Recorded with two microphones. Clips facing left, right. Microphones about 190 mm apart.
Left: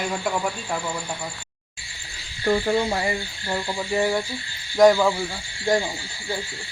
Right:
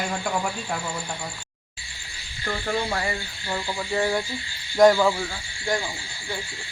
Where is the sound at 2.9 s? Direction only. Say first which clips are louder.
Left 3 dB; 20° left (ahead or behind); by 5.3 s 5° left (ahead or behind).